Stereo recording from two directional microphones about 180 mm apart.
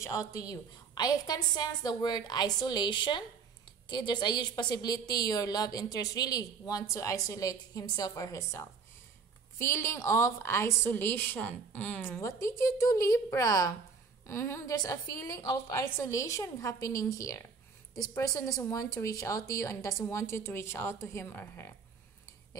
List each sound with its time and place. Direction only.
0.0 s a woman's voice: 15° left (ahead or behind)